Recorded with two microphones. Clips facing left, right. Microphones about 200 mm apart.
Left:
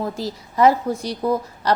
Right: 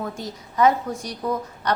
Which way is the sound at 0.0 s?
30° left (ahead or behind).